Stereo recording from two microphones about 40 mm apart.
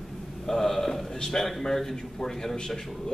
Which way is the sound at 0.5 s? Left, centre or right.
Centre.